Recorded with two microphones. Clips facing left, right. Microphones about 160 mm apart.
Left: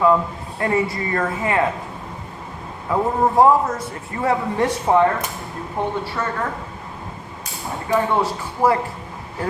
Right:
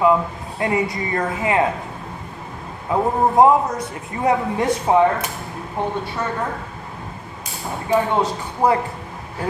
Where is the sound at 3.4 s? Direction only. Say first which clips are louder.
Right 1 dB; 20° right (ahead or behind).